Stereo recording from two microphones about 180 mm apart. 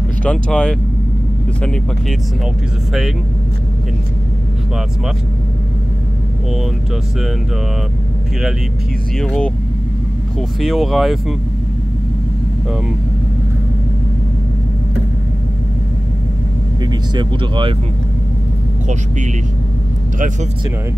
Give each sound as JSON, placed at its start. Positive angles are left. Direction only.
{"t": 0.2, "sound": "speech", "side_deg": 5}
{"t": 9.2, "sound": "speech", "side_deg": 5}
{"t": 10.6, "sound": "speech", "side_deg": 0}
{"t": 16.8, "sound": "speech", "side_deg": -25}